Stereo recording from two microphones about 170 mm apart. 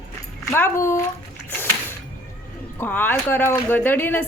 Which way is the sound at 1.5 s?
15° left (ahead or behind).